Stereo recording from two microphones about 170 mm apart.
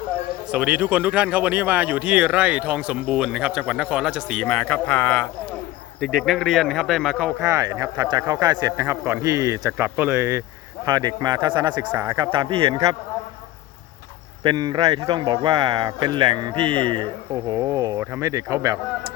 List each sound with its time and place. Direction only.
0.5 s speech: 5° right (ahead or behind)
7.3 s speech: 15° right (ahead or behind)
11.9 s speech: 10° right (ahead or behind)
12.1 s speech: 25° right (ahead or behind)
14.4 s speech: 25° right (ahead or behind)